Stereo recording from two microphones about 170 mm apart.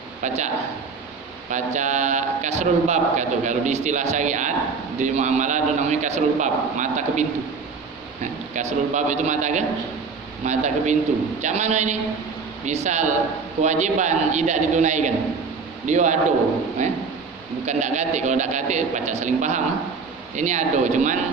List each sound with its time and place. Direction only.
0.2 s a man's voice: 45° right (ahead or behind)